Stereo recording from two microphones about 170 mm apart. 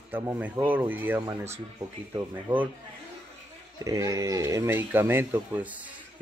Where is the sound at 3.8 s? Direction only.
20° right (ahead or behind).